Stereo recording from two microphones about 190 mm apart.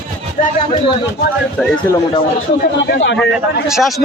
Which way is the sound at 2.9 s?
70° left (ahead or behind).